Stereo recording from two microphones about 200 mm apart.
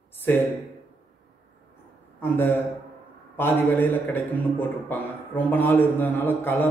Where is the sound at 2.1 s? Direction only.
10° left (ahead or behind).